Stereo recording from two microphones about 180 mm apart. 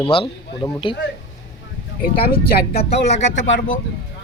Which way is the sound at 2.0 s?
55° left (ahead or behind).